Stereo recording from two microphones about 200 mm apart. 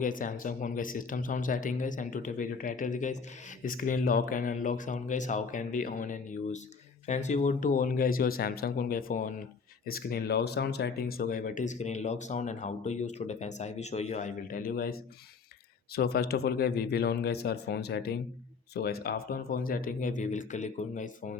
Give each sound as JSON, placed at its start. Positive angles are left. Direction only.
{"t": 0.0, "sound": "speech", "side_deg": 40}
{"t": 16.0, "sound": "speech", "side_deg": 50}